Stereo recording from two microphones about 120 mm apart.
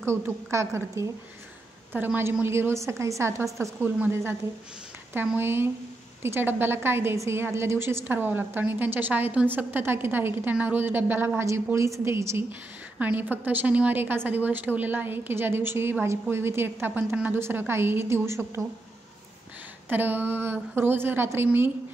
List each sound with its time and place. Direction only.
0.0 s a woman's voice: 20° right (ahead or behind)
19.9 s a woman's voice: 15° right (ahead or behind)